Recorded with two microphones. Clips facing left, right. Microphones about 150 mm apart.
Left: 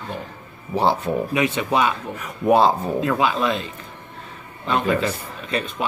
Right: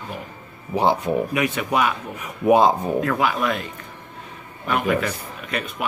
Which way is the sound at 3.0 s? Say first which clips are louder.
Left 1 dB; 20° left (ahead or behind).